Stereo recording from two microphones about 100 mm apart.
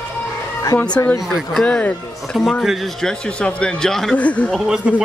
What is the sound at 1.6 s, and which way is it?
Speech, 10° left (ahead or behind).